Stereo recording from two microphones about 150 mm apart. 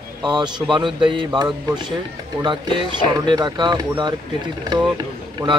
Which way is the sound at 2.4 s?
30° right (ahead or behind).